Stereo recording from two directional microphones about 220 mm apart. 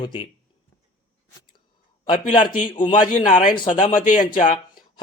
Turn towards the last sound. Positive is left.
turn(degrees=35)  # may be behind; listen again after turning